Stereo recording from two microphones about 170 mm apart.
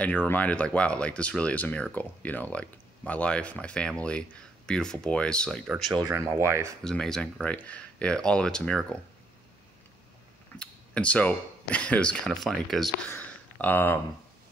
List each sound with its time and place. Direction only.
0.0 s speech: 10° left (ahead or behind)
5.9 s speech: 20° right (ahead or behind)
6.8 s speech: 5° left (ahead or behind)
10.6 s speech: 5° left (ahead or behind)
13.1 s a sound: 10° left (ahead or behind)